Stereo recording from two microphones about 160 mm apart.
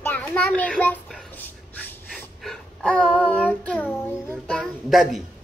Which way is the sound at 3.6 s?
5° left (ahead or behind).